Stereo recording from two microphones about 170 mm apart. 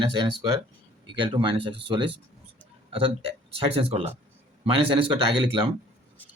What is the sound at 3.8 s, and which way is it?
Speech, 35° right (ahead or behind).